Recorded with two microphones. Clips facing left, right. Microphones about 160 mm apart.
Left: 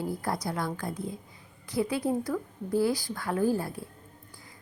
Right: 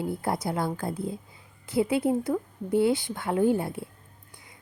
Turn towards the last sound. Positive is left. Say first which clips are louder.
# right 3 dB
turn(degrees=-25)  # may be behind; listen again after turning